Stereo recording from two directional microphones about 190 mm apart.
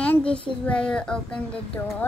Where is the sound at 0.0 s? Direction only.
5° left (ahead or behind).